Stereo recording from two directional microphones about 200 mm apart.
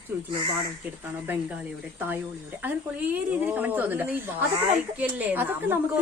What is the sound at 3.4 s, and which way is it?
A woman's voice, 10° right (ahead or behind).